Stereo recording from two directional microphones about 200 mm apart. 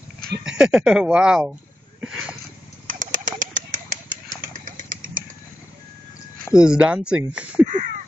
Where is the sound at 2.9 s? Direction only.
40° right (ahead or behind).